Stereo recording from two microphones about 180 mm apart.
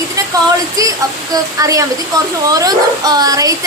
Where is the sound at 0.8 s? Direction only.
20° right (ahead or behind).